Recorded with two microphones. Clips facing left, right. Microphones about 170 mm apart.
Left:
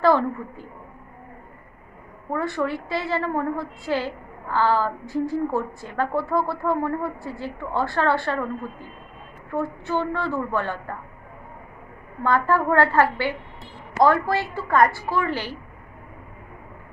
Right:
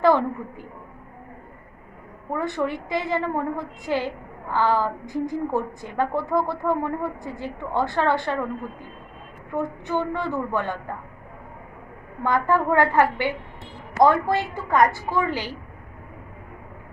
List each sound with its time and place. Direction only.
0.0 s a woman's voice: 15° right (ahead or behind)
2.3 s a woman's voice: 20° right (ahead or behind)
9.5 s a woman's voice: 15° right (ahead or behind)
12.2 s a woman's voice: 15° right (ahead or behind)